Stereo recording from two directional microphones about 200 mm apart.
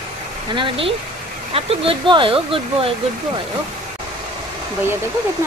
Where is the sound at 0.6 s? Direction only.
25° right (ahead or behind).